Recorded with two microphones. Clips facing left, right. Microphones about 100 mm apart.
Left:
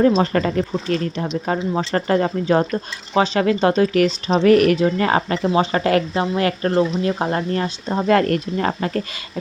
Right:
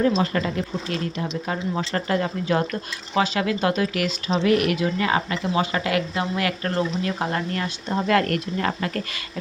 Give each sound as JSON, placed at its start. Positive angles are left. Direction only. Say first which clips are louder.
{"t": 0.0, "sound": "speech", "louder": "left 5 dB", "side_deg": 40}